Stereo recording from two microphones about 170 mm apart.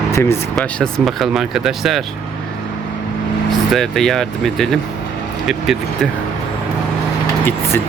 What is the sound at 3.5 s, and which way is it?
Speech, centre (ahead or behind).